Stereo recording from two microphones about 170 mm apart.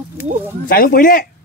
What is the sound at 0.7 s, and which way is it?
Speech, 60° left (ahead or behind).